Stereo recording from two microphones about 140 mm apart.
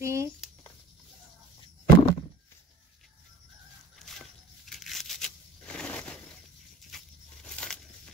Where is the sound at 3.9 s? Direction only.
Centre (ahead or behind).